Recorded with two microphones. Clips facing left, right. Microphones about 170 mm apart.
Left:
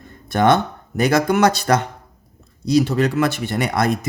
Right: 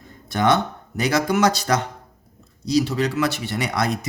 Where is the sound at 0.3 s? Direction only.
55° left (ahead or behind).